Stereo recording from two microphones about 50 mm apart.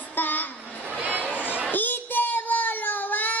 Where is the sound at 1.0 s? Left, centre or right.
Right.